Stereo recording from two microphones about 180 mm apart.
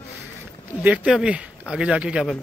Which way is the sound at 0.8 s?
5° right (ahead or behind).